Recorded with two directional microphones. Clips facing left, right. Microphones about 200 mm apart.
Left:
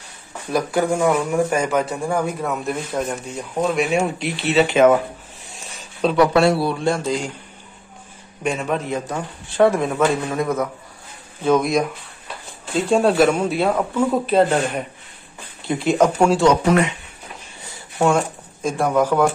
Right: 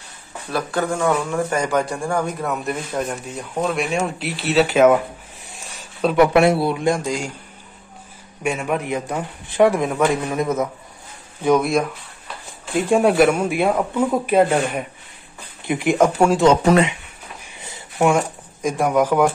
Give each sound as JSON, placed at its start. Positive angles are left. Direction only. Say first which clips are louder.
{"t": 0.5, "sound": "a man's voice", "louder": "left 3 dB", "side_deg": 15}
{"t": 6.2, "sound": "speech", "louder": "right 1 dB", "side_deg": -20}
{"t": 8.5, "sound": "speech", "louder": "even", "side_deg": -10}
{"t": 11.4, "sound": "speech", "louder": "even", "side_deg": -5}
{"t": 17.6, "sound": "a sound", "louder": "right 1 dB", "side_deg": -20}